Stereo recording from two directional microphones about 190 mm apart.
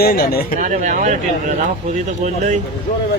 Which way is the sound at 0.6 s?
40° right (ahead or behind).